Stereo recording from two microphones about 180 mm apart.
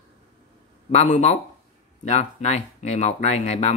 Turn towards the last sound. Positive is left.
turn(degrees=40)  # may be behind; listen again after turning